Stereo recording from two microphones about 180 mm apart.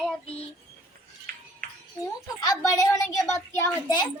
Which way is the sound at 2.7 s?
20° left (ahead or behind).